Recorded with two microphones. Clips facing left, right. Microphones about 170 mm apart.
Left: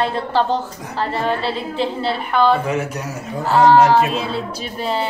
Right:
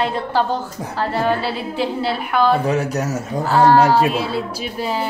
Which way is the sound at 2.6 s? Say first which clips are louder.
Right 3 dB; 35° right (ahead or behind).